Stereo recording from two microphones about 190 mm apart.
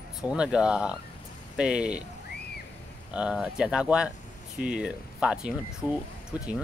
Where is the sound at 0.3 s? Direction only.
5° right (ahead or behind).